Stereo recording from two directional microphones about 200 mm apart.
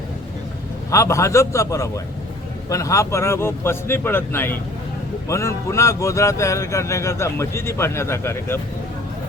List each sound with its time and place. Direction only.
0.9 s speech: 15° left (ahead or behind)